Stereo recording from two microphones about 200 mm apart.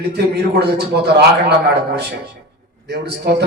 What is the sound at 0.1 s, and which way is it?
A man's voice, 55° right (ahead or behind).